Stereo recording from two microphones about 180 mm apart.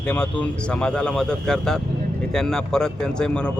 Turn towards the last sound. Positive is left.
turn(degrees=5)  # may be behind; listen again after turning